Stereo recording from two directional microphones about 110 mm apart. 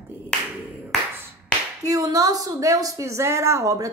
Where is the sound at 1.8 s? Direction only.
30° right (ahead or behind).